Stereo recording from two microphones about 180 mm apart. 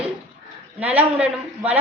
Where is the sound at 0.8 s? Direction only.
10° right (ahead or behind).